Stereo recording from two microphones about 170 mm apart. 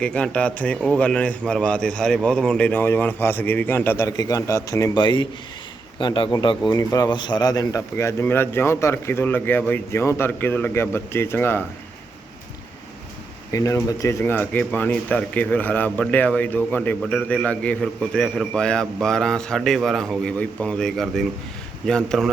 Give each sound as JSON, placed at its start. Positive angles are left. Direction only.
{"t": 0.0, "sound": "a man's voice", "side_deg": 5}
{"t": 13.5, "sound": "a man's voice", "side_deg": 20}